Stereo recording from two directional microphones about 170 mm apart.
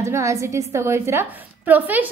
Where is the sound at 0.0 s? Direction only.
15° right (ahead or behind).